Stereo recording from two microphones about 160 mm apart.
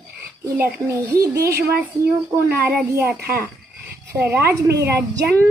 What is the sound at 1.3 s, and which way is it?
Speech, 85° right.